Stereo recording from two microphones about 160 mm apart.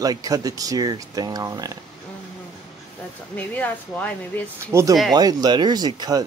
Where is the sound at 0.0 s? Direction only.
20° right (ahead or behind).